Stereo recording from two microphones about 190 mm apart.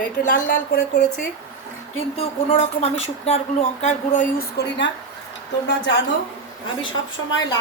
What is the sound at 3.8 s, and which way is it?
Speech, 45° left (ahead or behind).